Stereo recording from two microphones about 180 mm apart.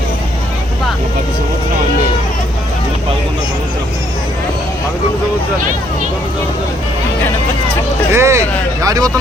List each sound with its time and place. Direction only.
8.1 s speech: 15° right (ahead or behind)